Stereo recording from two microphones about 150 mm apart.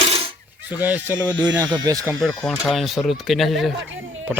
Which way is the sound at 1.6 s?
25° right (ahead or behind).